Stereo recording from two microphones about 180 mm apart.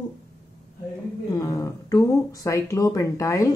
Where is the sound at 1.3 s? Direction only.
20° left (ahead or behind).